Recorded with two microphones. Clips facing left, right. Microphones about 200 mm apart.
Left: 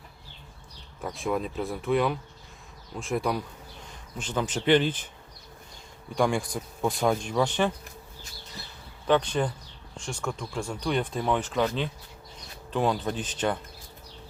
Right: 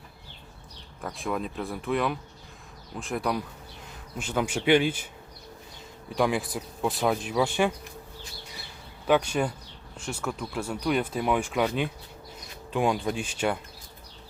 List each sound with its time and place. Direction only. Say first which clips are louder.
1.0 s speech: left 2 dB; centre (ahead or behind)
6.1 s speech: even; 5° right (ahead or behind)
9.0 s speech: even; 10° right (ahead or behind)